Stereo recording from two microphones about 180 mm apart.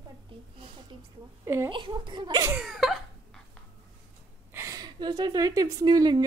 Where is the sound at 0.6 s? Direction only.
30° right (ahead or behind).